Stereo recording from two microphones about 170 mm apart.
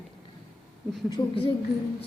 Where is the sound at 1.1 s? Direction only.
30° left (ahead or behind).